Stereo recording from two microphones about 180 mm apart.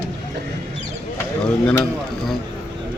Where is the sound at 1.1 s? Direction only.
5° left (ahead or behind).